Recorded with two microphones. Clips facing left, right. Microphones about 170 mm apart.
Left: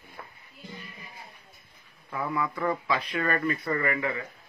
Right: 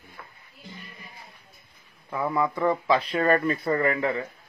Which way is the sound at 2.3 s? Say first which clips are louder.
Right 5 dB; 25° right (ahead or behind).